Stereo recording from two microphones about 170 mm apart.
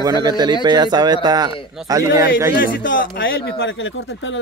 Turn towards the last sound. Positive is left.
turn(degrees=90)